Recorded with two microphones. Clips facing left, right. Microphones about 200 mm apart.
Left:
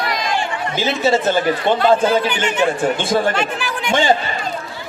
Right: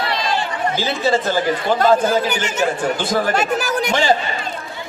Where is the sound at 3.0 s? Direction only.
25° left (ahead or behind).